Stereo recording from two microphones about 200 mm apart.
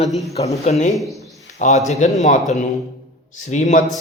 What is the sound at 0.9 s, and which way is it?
Speech, centre (ahead or behind).